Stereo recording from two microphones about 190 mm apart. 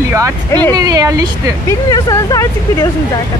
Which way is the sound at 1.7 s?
20° left (ahead or behind).